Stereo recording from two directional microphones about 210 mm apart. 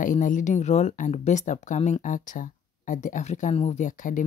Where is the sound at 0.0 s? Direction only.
35° left (ahead or behind).